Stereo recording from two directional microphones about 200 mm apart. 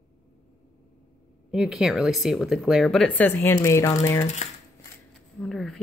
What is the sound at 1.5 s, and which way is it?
Speech, 5° right (ahead or behind).